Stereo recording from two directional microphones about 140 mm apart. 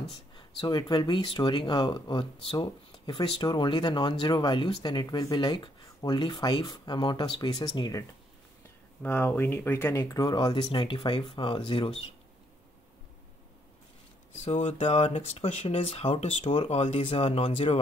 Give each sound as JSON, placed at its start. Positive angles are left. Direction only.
{"t": 0.6, "sound": "speech", "side_deg": 30}
{"t": 9.0, "sound": "speech", "side_deg": 15}
{"t": 14.4, "sound": "speech", "side_deg": 55}